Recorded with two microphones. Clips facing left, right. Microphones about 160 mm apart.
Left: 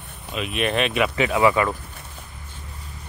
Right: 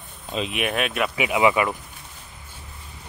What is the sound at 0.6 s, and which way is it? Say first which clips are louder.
Speech: left 4 dB; 5° right (ahead or behind).